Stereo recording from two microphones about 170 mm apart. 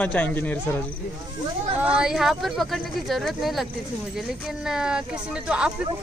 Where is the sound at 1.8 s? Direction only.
5° right (ahead or behind).